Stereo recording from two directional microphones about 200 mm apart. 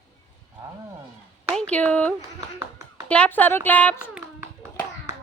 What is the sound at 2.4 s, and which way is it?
Tap, 20° right (ahead or behind).